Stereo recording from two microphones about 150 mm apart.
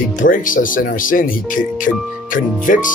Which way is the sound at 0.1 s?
65° left (ahead or behind).